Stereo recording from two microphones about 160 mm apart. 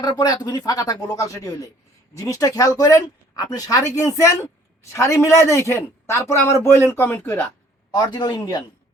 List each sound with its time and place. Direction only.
0.0 s speech: 25° left (ahead or behind)
7.9 s speech: 25° left (ahead or behind)